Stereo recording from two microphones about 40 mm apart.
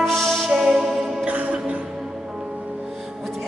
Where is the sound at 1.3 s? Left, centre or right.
Right.